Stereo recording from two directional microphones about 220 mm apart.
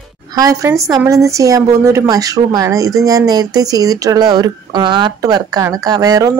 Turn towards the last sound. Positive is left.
turn(degrees=-15)  # may be behind; listen again after turning